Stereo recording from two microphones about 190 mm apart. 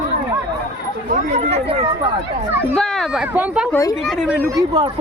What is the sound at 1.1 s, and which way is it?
Speech, 35° right (ahead or behind).